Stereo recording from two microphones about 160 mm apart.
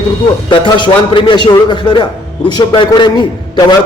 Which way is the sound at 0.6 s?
30° left (ahead or behind).